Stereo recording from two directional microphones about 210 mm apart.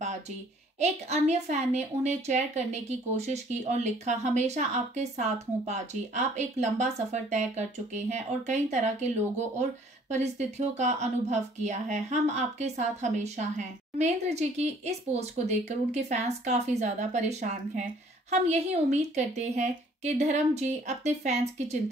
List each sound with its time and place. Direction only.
0.7 s a woman's voice: 30° right (ahead or behind)